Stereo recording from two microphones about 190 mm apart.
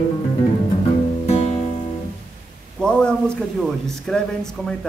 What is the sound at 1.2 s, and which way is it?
Music, 30° left (ahead or behind).